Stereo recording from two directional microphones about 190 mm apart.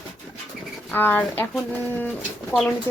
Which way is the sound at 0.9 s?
10° left (ahead or behind).